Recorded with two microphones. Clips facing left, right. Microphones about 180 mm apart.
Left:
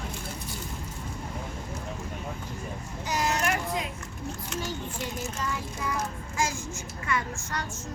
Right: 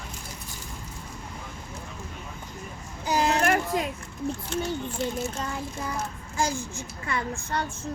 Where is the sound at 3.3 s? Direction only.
55° right (ahead or behind).